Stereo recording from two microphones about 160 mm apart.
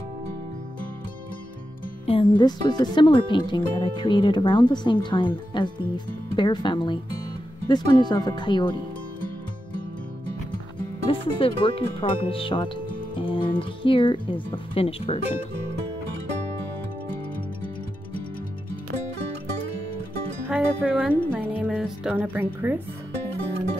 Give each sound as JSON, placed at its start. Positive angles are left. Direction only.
{"t": 2.0, "sound": "speech", "side_deg": 30}
{"t": 11.1, "sound": "speech", "side_deg": 35}
{"t": 20.4, "sound": "music", "side_deg": -5}
{"t": 21.3, "sound": "a woman's voice", "side_deg": -10}